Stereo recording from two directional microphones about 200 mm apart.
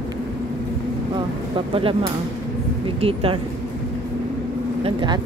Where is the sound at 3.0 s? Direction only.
30° right (ahead or behind).